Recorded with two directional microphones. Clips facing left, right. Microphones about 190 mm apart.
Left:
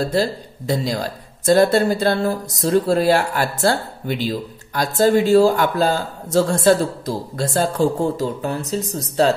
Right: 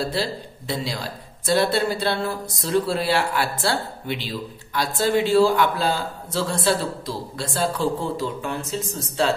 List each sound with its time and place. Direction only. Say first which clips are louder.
0.0 s speech: left 6 dB; 45° left (ahead or behind)